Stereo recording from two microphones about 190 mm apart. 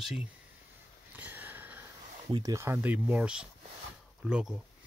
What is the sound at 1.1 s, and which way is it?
Sniff, 10° right (ahead or behind).